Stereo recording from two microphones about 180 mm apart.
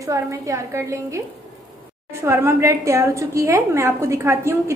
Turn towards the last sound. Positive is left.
turn(degrees=-15)  # may be behind; listen again after turning